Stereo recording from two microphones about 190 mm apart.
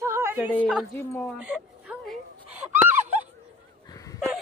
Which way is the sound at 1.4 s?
5° right (ahead or behind).